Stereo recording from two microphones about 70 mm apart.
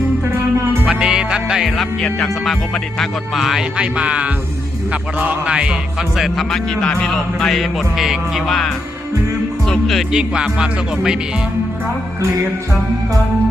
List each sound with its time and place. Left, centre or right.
0.9 s music: centre
3.8 s music: centre
6.1 s music: centre
6.5 s music: centre